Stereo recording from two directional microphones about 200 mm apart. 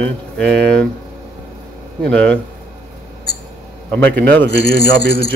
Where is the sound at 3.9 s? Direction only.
5° left (ahead or behind).